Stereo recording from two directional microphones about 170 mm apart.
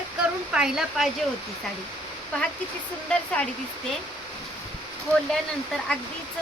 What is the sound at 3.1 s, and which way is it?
Speech, 5° left (ahead or behind).